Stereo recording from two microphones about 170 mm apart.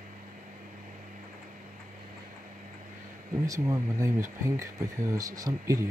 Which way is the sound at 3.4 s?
20° right (ahead or behind).